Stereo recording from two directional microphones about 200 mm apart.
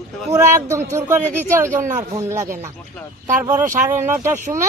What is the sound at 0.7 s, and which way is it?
Speech, 15° right (ahead or behind).